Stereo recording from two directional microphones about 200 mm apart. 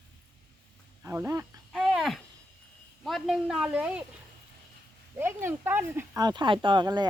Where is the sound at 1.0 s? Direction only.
15° right (ahead or behind).